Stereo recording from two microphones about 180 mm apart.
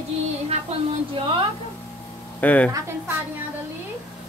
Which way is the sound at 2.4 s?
10° left (ahead or behind).